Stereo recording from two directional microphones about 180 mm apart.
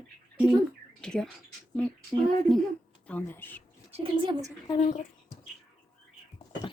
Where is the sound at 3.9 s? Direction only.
25° right (ahead or behind).